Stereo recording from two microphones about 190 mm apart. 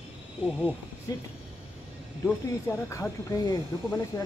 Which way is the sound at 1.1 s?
20° left (ahead or behind).